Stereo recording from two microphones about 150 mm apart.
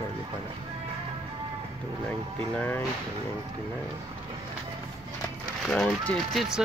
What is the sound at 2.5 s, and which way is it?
Speech, 10° left (ahead or behind).